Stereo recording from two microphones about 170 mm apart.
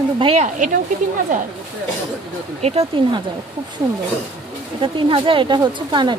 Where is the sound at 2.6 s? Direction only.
35° right (ahead or behind).